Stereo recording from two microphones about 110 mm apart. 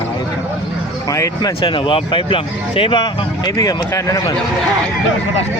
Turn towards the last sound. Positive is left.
turn(degrees=30)  # may be behind; listen again after turning